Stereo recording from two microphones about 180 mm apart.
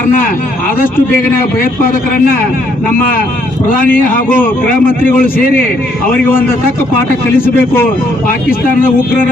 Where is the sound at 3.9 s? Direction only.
50° left (ahead or behind).